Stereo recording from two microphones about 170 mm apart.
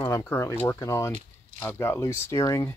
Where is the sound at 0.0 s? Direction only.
15° left (ahead or behind).